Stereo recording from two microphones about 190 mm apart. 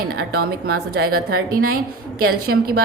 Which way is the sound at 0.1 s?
55° right (ahead or behind).